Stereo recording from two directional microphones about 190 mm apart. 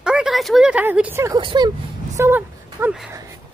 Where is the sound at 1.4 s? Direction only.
25° right (ahead or behind).